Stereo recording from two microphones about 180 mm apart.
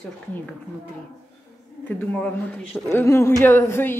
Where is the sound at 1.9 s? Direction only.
10° left (ahead or behind).